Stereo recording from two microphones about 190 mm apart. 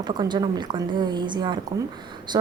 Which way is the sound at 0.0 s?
20° right (ahead or behind).